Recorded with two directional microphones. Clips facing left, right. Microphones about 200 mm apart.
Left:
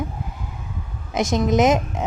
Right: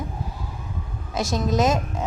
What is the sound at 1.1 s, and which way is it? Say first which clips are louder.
Speech: left 4 dB; 20° left (ahead or behind).